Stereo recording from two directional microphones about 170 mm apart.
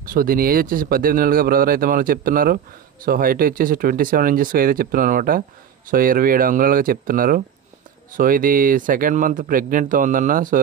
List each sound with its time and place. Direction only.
0.0 s a man's voice: 55° right (ahead or behind)